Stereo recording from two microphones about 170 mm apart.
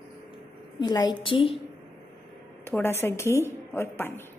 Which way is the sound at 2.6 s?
15° left (ahead or behind).